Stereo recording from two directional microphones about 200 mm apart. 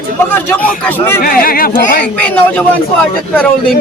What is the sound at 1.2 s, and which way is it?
Speech, 45° left (ahead or behind).